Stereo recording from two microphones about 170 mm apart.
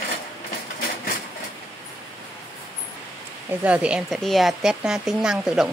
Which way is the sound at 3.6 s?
5° right (ahead or behind).